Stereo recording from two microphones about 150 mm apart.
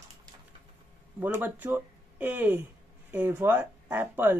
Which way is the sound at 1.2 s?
10° right (ahead or behind).